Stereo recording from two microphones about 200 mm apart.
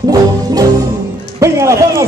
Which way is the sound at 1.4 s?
15° right (ahead or behind).